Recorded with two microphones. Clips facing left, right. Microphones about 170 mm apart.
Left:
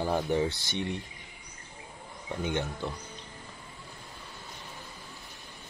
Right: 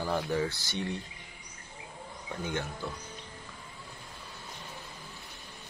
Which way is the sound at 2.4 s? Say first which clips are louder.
Left 3 dB; 20° left (ahead or behind).